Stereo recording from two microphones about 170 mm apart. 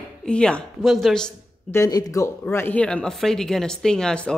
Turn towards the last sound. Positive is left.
turn(degrees=5)  # may be behind; listen again after turning